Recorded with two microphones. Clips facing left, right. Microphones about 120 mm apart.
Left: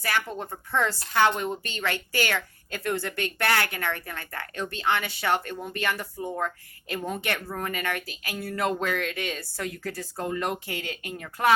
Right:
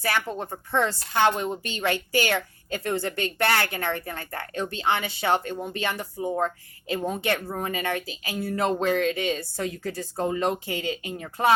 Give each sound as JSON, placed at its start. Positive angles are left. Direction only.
{"t": 0.0, "sound": "speech", "side_deg": -30}